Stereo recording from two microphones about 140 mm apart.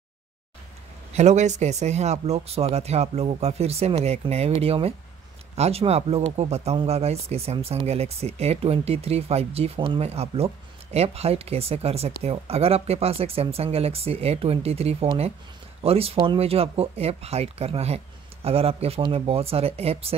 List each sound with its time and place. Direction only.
1.1 s speech: 55° right (ahead or behind)